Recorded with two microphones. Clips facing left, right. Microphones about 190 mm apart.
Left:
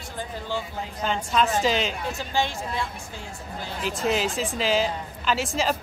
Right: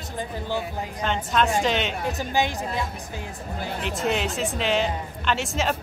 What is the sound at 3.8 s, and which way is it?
Speech, centre (ahead or behind).